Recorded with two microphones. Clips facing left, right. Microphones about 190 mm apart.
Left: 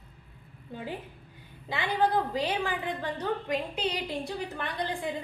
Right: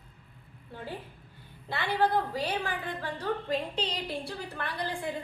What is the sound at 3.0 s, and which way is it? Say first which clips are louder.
A woman's voice: left 1 dB; 15° left (ahead or behind).